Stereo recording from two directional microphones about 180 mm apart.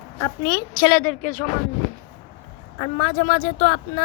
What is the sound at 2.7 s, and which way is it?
Speech, 30° left (ahead or behind).